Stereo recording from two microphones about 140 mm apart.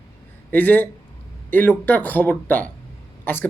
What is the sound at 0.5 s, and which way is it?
Speech, 15° left (ahead or behind).